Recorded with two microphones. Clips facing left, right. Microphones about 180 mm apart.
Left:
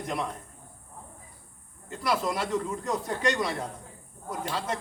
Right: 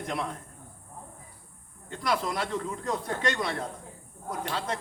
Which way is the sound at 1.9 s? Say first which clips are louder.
Left 1 dB; centre (ahead or behind).